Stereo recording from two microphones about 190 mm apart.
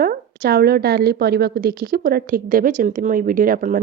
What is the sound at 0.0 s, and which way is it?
A woman's voice, 50° right (ahead or behind).